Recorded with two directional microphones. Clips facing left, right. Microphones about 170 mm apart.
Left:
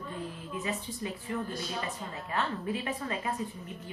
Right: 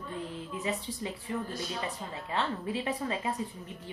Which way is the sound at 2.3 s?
25° right (ahead or behind).